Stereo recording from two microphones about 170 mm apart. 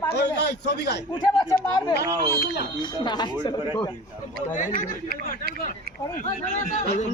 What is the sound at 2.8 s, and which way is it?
A man's voice, 25° left (ahead or behind).